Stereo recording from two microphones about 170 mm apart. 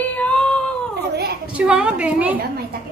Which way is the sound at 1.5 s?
5° right (ahead or behind).